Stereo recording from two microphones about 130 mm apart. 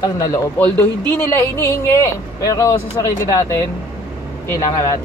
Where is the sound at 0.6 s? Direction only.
15° left (ahead or behind).